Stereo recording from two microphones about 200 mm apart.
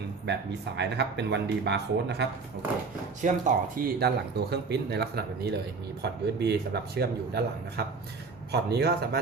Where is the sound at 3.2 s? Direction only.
40° right (ahead or behind).